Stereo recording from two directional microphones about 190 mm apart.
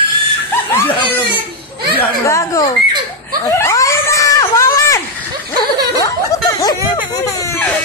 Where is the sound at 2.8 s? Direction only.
25° right (ahead or behind).